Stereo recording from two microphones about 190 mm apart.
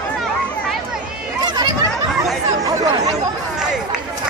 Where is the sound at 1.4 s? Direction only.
20° right (ahead or behind).